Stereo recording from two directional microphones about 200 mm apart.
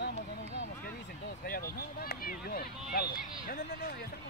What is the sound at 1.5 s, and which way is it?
Speech, 50° left (ahead or behind).